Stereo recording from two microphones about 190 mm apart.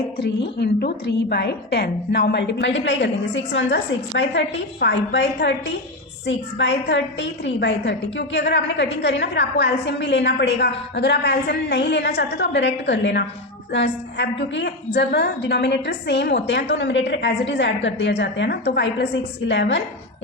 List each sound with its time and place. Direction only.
0.6 s a woman's voice: 60° left (ahead or behind)